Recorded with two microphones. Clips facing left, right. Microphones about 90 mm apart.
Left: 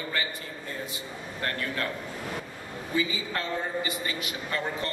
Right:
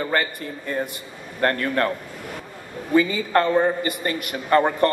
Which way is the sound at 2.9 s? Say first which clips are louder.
Right 11 dB; 55° right (ahead or behind).